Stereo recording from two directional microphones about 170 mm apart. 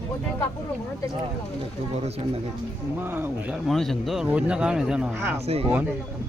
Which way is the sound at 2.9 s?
10° right (ahead or behind).